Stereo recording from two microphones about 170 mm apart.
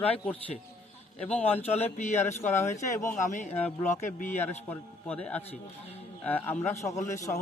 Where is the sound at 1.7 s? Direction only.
40° left (ahead or behind).